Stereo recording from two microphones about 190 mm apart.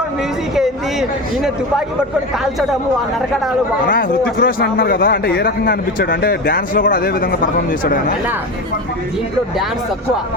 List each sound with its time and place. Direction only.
3.8 s speech: 50° left (ahead or behind)